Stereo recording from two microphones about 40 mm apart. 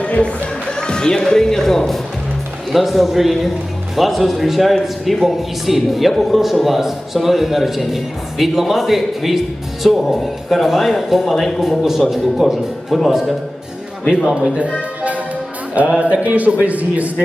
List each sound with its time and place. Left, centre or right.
0.0 s speech: left
0.8 s music: centre
1.3 s speech: centre
2.7 s speech: centre
11.6 s speech: centre
15.9 s speech: right